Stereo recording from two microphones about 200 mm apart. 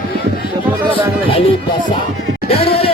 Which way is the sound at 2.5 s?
30° left (ahead or behind).